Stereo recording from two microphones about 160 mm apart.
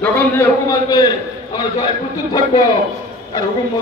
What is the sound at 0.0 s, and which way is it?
A man's voice, 15° left (ahead or behind).